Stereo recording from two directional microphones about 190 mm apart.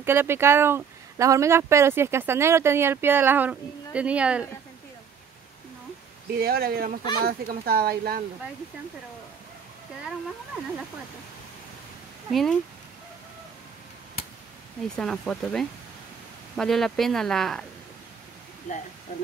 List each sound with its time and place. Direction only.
0.0 s speech: 10° right (ahead or behind)
6.3 s speech: 55° right (ahead or behind)
12.3 s speech: centre (ahead or behind)
15.0 s speech: 5° left (ahead or behind)